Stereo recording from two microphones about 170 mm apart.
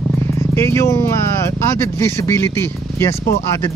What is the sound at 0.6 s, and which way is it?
Speech, 15° left (ahead or behind).